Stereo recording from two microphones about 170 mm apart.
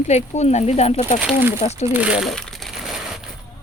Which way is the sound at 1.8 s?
10° right (ahead or behind).